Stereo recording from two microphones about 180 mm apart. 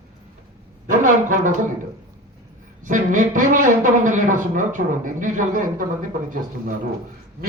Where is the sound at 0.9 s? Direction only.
45° right (ahead or behind).